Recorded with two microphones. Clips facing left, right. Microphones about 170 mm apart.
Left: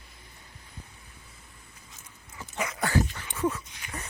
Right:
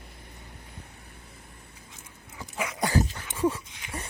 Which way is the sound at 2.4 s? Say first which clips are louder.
Right 1 dB; 10° right (ahead or behind).